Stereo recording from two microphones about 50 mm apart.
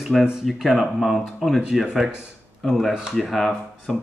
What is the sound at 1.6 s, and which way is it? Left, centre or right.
Speech, centre.